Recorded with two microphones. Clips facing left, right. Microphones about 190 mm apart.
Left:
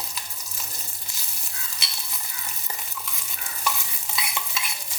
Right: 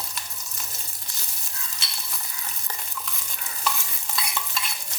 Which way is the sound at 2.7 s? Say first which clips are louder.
Even; 10° left (ahead or behind).